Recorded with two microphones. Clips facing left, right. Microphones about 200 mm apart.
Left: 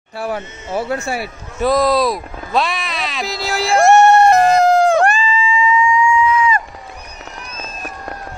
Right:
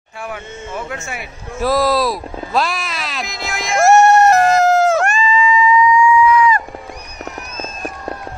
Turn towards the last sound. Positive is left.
turn(degrees=25)  # may be behind; listen again after turning